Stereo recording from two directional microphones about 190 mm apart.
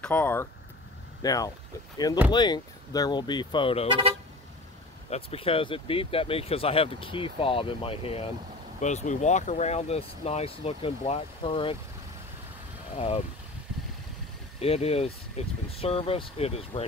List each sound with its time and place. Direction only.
0.0 s speech: 10° left (ahead or behind); by 3.9 s 30° left (ahead or behind)
5.1 s speech: 30° left (ahead or behind)
12.9 s speech: 30° left (ahead or behind)
14.6 s speech: 30° left (ahead or behind)